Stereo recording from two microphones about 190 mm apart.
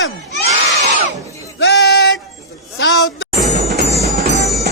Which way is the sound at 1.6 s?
60° left (ahead or behind).